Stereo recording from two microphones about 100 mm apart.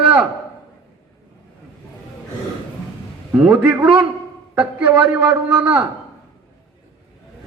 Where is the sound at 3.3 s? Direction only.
15° right (ahead or behind).